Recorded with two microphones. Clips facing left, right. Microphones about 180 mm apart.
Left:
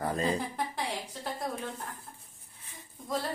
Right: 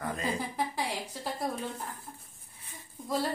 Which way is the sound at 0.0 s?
35° left (ahead or behind).